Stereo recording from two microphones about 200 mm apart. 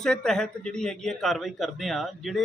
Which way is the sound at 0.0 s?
5° left (ahead or behind).